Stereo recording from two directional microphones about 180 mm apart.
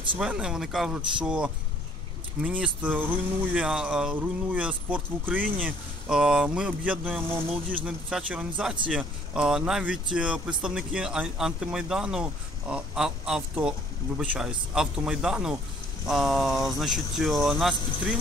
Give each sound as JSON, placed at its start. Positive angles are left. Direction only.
{"t": 0.2, "sound": "speech", "side_deg": -5}